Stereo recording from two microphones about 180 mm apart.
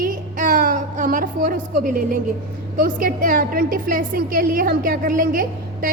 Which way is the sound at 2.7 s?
55° right (ahead or behind).